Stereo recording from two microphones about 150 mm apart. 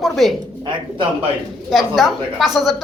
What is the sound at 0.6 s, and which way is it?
Speech, 35° right (ahead or behind).